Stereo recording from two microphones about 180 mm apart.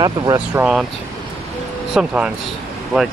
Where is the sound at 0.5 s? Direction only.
5° right (ahead or behind).